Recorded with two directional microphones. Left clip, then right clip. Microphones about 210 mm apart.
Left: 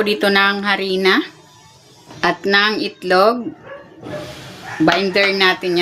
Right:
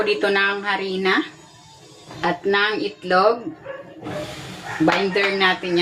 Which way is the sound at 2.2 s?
60° left (ahead or behind).